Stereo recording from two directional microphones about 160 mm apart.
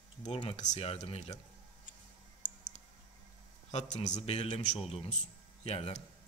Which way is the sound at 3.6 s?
45° left (ahead or behind).